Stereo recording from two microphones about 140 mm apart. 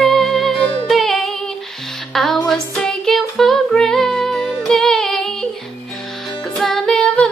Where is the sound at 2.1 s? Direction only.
Centre (ahead or behind).